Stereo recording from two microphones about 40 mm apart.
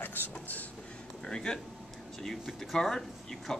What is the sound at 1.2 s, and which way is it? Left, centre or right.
Speech, centre.